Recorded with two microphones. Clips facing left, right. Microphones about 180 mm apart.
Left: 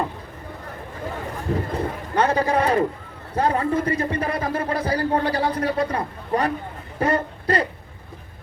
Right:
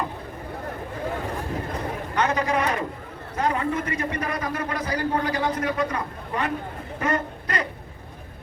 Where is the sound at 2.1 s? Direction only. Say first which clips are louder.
Left 4 dB; 30° left (ahead or behind).